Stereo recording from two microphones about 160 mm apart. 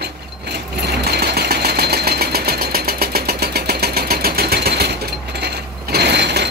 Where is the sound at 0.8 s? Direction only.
90° right.